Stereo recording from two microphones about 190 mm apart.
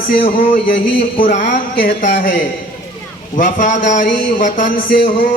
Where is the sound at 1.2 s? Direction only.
40° left (ahead or behind).